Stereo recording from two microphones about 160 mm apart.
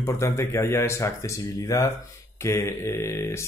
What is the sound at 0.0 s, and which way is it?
Speech, 15° left (ahead or behind).